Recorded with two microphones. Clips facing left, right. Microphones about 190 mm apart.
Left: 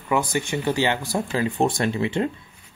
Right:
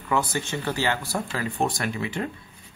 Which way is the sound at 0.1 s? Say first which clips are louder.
Left 3 dB; 15° left (ahead or behind).